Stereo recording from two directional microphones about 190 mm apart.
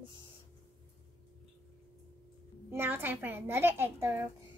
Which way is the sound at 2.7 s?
10° right (ahead or behind).